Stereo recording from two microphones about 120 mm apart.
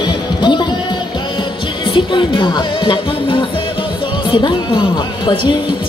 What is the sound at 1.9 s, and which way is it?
Music, 45° left (ahead or behind).